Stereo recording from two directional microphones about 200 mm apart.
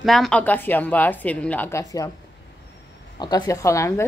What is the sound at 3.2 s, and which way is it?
Speech, 15° left (ahead or behind).